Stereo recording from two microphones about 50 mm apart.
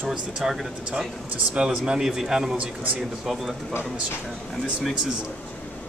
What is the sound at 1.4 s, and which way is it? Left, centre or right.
Speech, centre.